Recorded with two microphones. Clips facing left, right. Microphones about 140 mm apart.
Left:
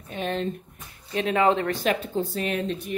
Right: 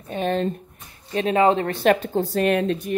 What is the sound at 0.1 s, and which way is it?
Speech, 40° right (ahead or behind).